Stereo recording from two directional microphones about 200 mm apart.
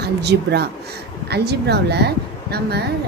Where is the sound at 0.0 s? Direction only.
55° right (ahead or behind).